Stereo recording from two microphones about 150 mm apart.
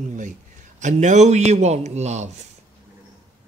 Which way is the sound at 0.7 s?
55° right (ahead or behind).